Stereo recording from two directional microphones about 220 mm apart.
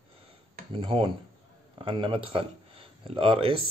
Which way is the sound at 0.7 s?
25° right (ahead or behind).